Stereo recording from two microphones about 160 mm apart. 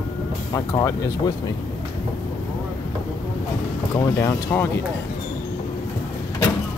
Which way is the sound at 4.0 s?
15° left (ahead or behind).